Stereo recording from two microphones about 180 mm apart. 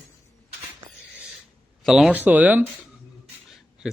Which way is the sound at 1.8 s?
5° right (ahead or behind).